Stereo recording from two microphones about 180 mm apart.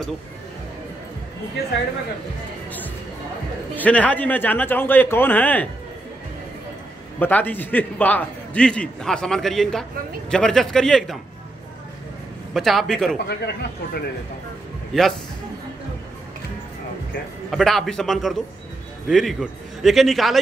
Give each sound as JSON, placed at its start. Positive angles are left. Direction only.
{"t": 3.7, "sound": "speech", "side_deg": 10}
{"t": 7.2, "sound": "a man's voice", "side_deg": 10}
{"t": 12.5, "sound": "a man's voice", "side_deg": 0}
{"t": 13.3, "sound": "speech", "side_deg": 65}
{"t": 14.9, "sound": "a man's voice", "side_deg": 0}
{"t": 17.5, "sound": "a man's voice", "side_deg": 0}